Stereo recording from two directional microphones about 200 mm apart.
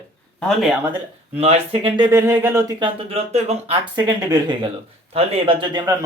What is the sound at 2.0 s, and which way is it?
Speech, 15° right (ahead or behind).